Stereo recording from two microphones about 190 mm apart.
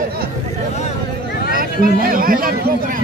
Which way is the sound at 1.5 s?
50° right (ahead or behind).